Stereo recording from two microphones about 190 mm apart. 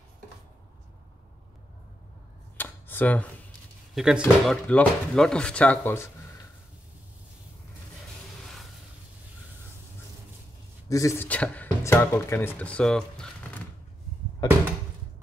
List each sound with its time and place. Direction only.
2.5 s a sound: 10° left (ahead or behind)
3.9 s speech: 5° right (ahead or behind)
10.9 s speech: 15° left (ahead or behind)
14.4 s cupboard open or close: 20° left (ahead or behind)